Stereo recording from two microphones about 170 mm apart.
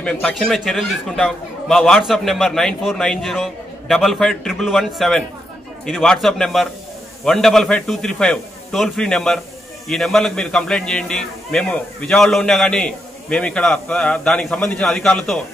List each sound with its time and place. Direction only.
0.0 s a man's voice: 5° left (ahead or behind)